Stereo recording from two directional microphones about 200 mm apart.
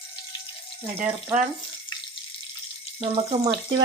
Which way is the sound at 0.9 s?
10° right (ahead or behind).